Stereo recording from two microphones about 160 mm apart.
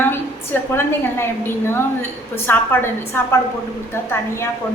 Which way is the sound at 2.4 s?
15° left (ahead or behind).